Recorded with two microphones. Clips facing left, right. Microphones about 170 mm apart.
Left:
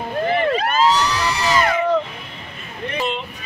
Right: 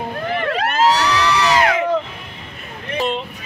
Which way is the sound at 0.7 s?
75° right (ahead or behind).